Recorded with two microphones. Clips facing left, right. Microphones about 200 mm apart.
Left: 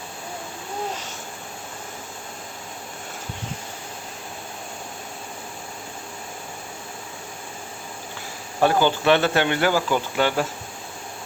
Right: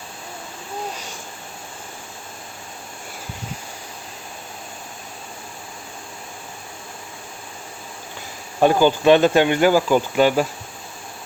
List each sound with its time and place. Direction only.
8.6 s cricket: 15° right (ahead or behind)